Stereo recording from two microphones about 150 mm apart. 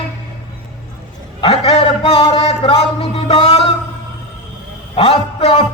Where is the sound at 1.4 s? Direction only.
40° left (ahead or behind).